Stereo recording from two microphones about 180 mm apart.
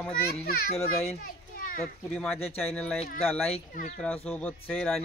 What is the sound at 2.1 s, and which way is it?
Speech, 5° left (ahead or behind).